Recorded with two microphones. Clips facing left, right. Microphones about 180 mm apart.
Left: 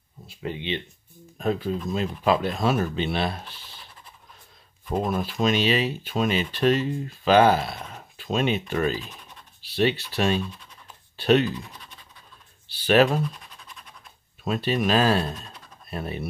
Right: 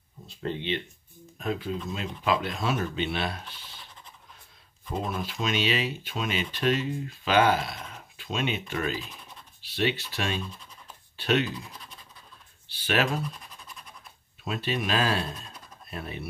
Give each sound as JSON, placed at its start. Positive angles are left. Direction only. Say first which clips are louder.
{"t": 0.3, "sound": "speech", "louder": "even", "side_deg": 10}
{"t": 1.4, "sound": "speech", "louder": "left 5 dB", "side_deg": 40}
{"t": 5.0, "sound": "speech", "louder": "left 7 dB", "side_deg": 45}
{"t": 12.8, "sound": "speech", "louder": "left 8 dB", "side_deg": 35}
{"t": 14.4, "sound": "speech", "louder": "left 6 dB", "side_deg": 40}